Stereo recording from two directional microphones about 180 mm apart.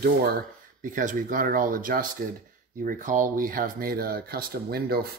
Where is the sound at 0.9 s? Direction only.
45° right (ahead or behind).